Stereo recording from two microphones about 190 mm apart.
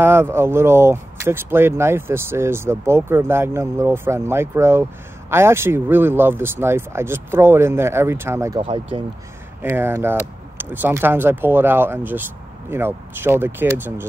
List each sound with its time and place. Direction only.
0.0 s speech: 10° right (ahead or behind)
8.5 s speech: 30° right (ahead or behind)
9.6 s speech: 10° right (ahead or behind)